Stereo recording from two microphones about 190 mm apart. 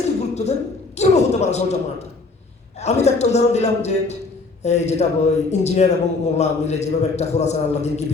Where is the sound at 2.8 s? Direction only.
35° left (ahead or behind).